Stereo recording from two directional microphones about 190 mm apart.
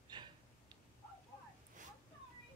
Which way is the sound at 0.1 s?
25° right (ahead or behind).